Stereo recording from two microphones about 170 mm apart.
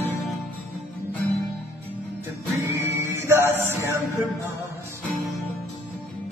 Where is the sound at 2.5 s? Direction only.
15° right (ahead or behind).